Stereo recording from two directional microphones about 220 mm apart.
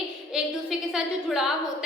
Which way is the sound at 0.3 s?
Centre (ahead or behind).